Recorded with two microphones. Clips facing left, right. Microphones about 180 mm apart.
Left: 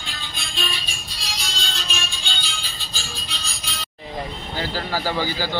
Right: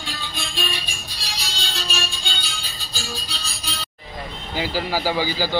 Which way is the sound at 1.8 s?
40° right (ahead or behind).